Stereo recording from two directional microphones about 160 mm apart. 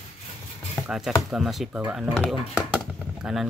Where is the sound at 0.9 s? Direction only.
5° right (ahead or behind).